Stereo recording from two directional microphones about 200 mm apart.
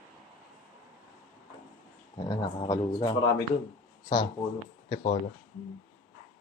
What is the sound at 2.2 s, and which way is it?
Speech, 20° left (ahead or behind).